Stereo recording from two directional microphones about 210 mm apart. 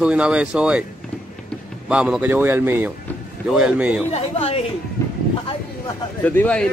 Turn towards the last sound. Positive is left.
turn(degrees=5)  # may be behind; listen again after turning